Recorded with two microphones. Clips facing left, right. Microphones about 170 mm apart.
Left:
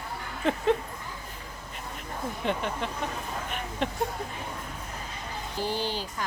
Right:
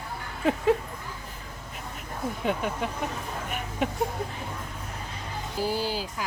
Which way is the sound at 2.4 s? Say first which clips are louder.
Right 1 dB; 5° right (ahead or behind).